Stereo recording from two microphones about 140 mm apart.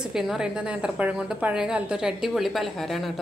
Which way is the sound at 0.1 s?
5° right (ahead or behind).